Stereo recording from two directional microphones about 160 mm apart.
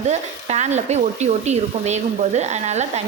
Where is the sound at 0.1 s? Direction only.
45° right (ahead or behind).